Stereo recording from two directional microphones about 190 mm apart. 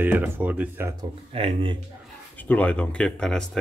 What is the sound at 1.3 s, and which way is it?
Speech, 30° right (ahead or behind).